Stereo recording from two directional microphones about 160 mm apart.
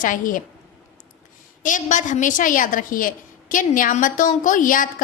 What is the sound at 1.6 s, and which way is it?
A woman's voice, 55° left (ahead or behind).